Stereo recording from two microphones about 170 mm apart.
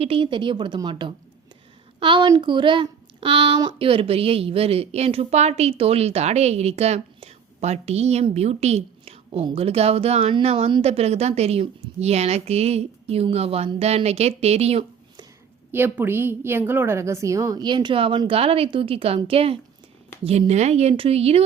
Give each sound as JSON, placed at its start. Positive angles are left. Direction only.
{"t": 0.0, "sound": "a woman's voice", "side_deg": -30}
{"t": 15.7, "sound": "a woman's voice", "side_deg": -10}